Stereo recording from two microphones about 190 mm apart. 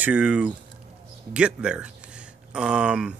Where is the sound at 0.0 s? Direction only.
10° right (ahead or behind).